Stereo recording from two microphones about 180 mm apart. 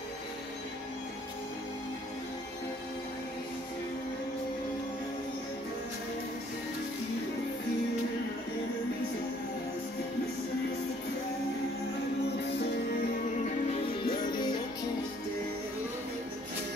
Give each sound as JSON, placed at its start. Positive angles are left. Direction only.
{"t": 13.7, "sound": "music", "side_deg": 25}